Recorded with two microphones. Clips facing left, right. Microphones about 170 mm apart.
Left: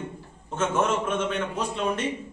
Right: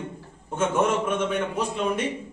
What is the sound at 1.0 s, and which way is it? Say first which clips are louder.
Speech: right 2 dB; 10° right (ahead or behind).